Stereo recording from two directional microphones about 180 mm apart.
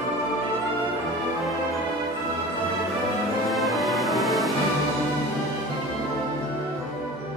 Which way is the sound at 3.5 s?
Centre (ahead or behind).